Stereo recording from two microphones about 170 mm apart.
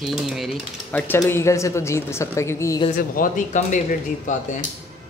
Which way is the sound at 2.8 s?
50° left (ahead or behind).